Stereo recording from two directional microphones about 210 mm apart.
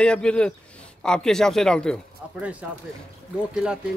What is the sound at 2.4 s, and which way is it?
Speech, 5° right (ahead or behind).